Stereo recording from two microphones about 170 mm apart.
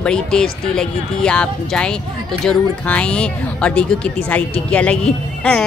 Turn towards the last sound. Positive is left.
turn(degrees=5)  # may be behind; listen again after turning